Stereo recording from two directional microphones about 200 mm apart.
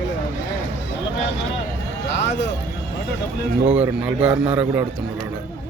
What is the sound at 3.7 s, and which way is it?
A man's voice, 5° right (ahead or behind).